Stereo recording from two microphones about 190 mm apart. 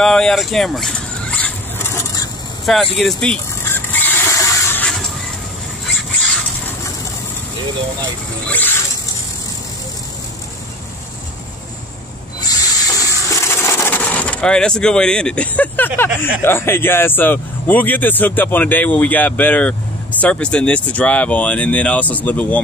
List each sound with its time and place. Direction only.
0.0 s vehicle: 5° left (ahead or behind)
2.6 s speech: centre (ahead or behind)
3.0 s squeal: 5° left (ahead or behind)
8.5 s speech: 10° left (ahead or behind)
12.4 s toilet flush: 20° left (ahead or behind)
16.4 s speech: 10° left (ahead or behind)